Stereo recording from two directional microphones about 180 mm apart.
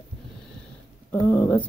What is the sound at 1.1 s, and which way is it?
Speech, 10° left (ahead or behind).